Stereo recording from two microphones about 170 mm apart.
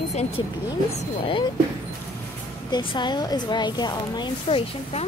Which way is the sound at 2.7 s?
25° left (ahead or behind).